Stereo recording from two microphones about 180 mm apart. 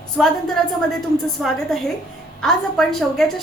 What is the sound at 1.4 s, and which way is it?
A woman's voice, centre (ahead or behind).